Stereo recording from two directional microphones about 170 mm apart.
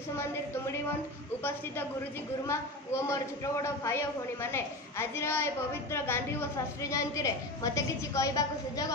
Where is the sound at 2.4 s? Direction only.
15° left (ahead or behind).